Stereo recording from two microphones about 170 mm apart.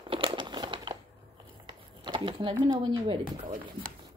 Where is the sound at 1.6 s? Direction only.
30° right (ahead or behind).